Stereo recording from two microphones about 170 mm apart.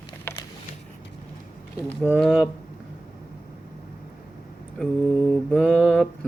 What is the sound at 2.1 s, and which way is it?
Speech, 5° left (ahead or behind).